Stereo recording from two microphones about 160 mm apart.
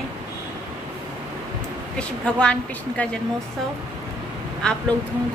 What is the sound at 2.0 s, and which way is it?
A woman's voice, 5° left (ahead or behind).